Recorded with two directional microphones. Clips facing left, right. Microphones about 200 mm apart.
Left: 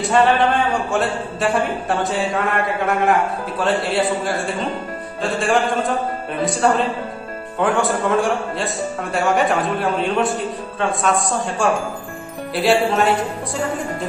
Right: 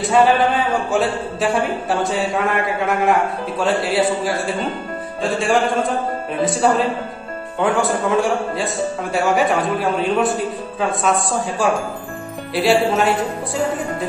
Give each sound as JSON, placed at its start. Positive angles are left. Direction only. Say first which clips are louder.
{"t": 0.0, "sound": "a man's voice", "louder": "right 1 dB", "side_deg": 0}